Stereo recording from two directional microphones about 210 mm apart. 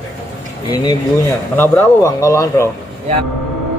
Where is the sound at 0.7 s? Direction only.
20° left (ahead or behind).